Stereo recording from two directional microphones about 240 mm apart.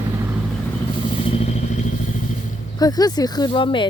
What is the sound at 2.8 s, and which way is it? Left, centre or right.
Speech, centre.